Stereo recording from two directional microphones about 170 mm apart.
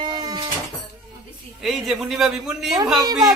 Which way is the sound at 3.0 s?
20° right (ahead or behind).